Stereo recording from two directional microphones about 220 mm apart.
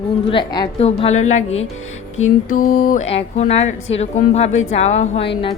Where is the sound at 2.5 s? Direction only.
40° left (ahead or behind).